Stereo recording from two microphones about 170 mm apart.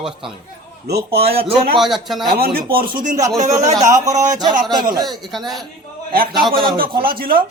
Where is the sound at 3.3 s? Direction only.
40° right (ahead or behind).